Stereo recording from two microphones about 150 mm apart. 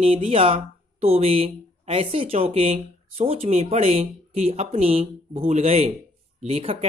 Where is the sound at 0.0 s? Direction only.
40° right (ahead or behind).